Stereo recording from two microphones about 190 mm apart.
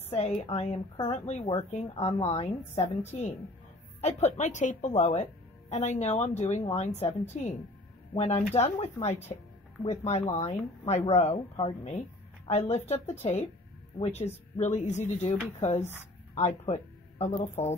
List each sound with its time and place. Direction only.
0.1 s a woman's voice: 35° left (ahead or behind)